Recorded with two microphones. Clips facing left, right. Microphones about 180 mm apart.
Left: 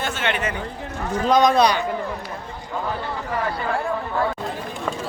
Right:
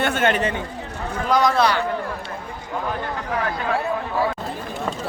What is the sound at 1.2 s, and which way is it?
Speech, 20° left (ahead or behind).